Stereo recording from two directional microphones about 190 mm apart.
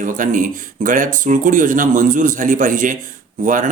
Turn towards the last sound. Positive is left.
turn(degrees=-45)  # may be behind; listen again after turning